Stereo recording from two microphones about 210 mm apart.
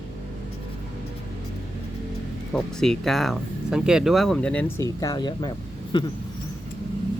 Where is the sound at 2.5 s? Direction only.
Centre (ahead or behind); by 6.0 s 20° left (ahead or behind).